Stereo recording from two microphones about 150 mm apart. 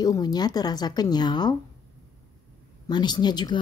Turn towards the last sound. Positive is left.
turn(degrees=30)  # may be behind; listen again after turning